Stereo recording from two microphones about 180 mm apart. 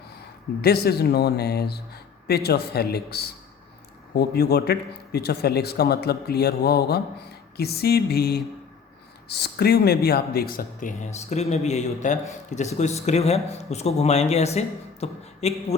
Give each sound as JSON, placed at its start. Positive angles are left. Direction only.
{"t": 0.6, "sound": "speech", "side_deg": 60}